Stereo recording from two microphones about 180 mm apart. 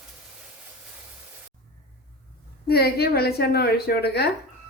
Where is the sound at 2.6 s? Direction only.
60° left (ahead or behind).